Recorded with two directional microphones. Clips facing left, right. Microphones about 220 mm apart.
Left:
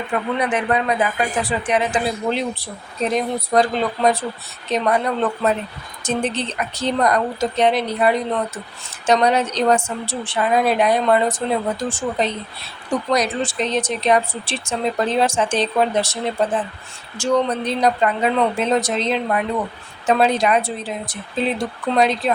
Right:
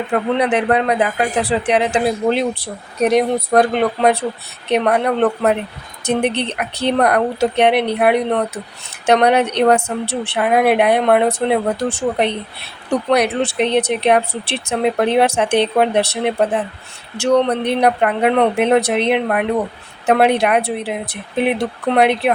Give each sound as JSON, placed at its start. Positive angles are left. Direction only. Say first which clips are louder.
{"t": 0.4, "sound": "speech", "louder": "right 4 dB", "side_deg": -70}